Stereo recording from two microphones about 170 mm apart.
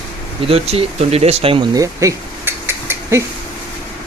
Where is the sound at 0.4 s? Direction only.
35° right (ahead or behind).